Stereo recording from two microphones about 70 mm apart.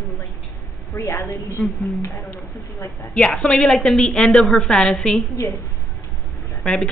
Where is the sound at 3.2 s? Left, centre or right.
Centre.